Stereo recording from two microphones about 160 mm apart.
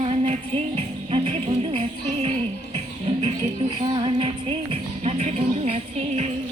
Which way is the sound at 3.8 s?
30° right (ahead or behind).